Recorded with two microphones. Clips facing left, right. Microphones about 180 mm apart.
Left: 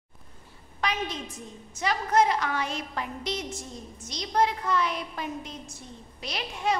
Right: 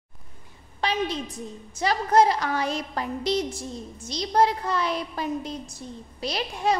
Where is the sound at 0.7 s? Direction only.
30° right (ahead or behind).